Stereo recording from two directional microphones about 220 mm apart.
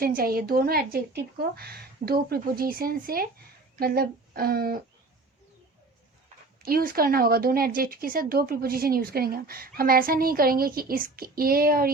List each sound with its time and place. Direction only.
0.0 s a woman's voice: 40° right (ahead or behind)
6.6 s a woman's voice: 40° right (ahead or behind)